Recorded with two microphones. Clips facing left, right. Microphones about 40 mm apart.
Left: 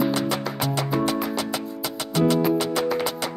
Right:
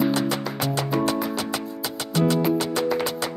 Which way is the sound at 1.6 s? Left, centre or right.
Centre.